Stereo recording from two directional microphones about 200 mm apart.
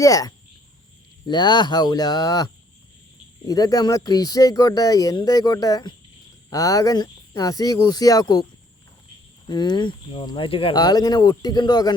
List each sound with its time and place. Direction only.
0.0 s speech: 15° left (ahead or behind)
9.5 s speech: 20° left (ahead or behind)